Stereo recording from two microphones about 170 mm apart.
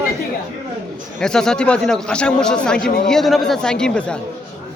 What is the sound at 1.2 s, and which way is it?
Speech, 5° left (ahead or behind).